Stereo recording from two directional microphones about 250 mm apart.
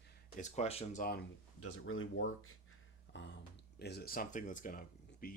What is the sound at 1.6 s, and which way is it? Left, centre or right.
Speech, left.